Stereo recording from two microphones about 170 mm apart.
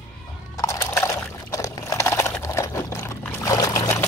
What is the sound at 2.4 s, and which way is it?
Pour, 15° left (ahead or behind).